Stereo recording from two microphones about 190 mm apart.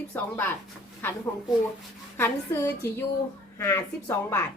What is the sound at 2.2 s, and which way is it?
A woman's voice, 15° left (ahead or behind).